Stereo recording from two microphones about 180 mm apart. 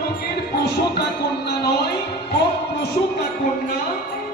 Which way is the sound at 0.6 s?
65° left (ahead or behind).